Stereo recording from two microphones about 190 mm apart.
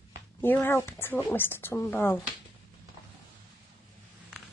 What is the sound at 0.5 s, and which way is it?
Speech, 15° left (ahead or behind).